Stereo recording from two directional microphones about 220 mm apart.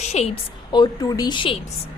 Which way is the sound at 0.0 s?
30° left (ahead or behind).